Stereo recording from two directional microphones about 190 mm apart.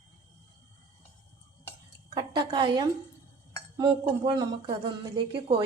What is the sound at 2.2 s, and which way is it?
A woman's voice, 25° right (ahead or behind).